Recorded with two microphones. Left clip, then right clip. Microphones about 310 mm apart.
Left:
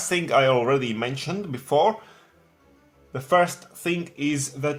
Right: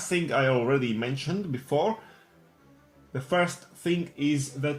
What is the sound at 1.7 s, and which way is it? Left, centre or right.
Speech, left.